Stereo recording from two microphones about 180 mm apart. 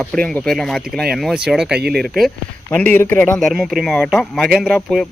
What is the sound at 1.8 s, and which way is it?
Speech, 60° right (ahead or behind).